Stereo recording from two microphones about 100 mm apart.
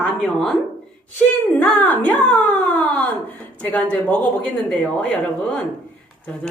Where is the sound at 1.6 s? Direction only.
15° left (ahead or behind).